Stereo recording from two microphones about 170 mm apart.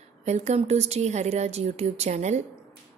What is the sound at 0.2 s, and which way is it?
A woman's voice, 40° right (ahead or behind).